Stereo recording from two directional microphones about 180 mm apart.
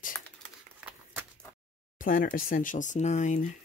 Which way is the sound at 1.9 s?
50° left (ahead or behind).